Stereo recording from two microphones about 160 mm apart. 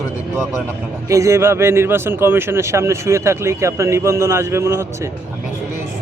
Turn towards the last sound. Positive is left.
turn(degrees=-15)  # may be behind; listen again after turning